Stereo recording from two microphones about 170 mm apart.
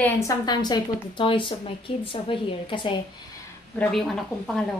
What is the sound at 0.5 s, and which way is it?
A woman's voice, 25° left (ahead or behind).